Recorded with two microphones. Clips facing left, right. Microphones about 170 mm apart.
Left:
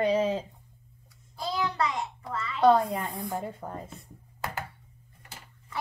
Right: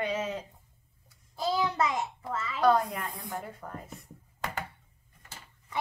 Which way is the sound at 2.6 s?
20° left (ahead or behind).